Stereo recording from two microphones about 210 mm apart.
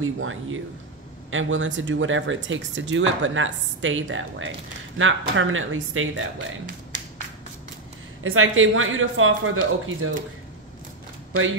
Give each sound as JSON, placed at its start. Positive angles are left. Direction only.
{"t": 0.0, "sound": "speech", "side_deg": -70}
{"t": 8.2, "sound": "speech", "side_deg": -75}